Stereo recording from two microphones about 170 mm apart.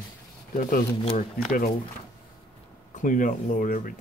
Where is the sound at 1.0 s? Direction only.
55° left (ahead or behind).